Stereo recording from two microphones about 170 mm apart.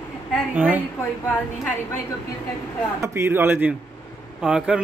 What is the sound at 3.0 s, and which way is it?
A man's voice, 15° right (ahead or behind).